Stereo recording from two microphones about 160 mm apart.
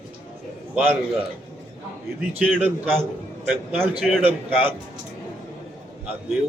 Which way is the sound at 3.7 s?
10° right (ahead or behind).